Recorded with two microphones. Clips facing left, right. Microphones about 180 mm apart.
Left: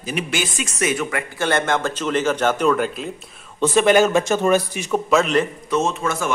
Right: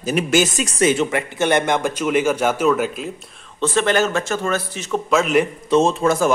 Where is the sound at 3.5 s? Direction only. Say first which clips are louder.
Left 3 dB; 10° left (ahead or behind).